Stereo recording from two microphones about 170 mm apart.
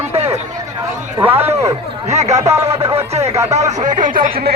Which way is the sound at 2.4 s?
15° right (ahead or behind).